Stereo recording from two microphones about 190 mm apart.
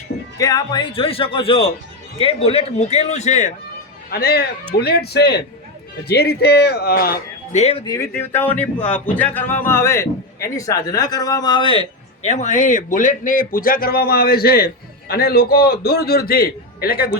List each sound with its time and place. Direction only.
0.3 s a man's voice: 20° left (ahead or behind); by 3.5 s 40° left (ahead or behind)
4.1 s speech: 55° left (ahead or behind)
7.6 s a man's voice: 30° left (ahead or behind)
7.9 s speech: 15° left (ahead or behind)
12.2 s speech: 40° left (ahead or behind)